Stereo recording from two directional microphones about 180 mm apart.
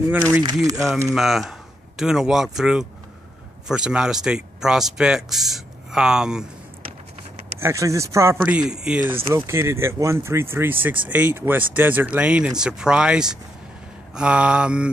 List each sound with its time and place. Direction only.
0.1 s speech: 10° right (ahead or behind)
7.6 s speech: 15° right (ahead or behind)
8.4 s speech: 5° right (ahead or behind)